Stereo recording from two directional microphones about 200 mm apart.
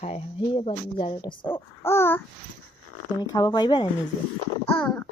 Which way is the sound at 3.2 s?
20° left (ahead or behind).